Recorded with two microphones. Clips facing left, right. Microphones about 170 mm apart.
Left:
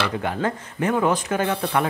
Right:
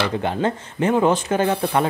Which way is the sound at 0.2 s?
25° right (ahead or behind).